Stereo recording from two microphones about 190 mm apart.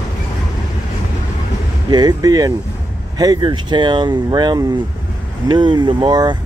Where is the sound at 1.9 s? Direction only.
20° right (ahead or behind).